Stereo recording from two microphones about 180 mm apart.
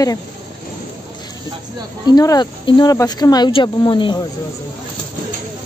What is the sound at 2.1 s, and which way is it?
Speech, 20° left (ahead or behind).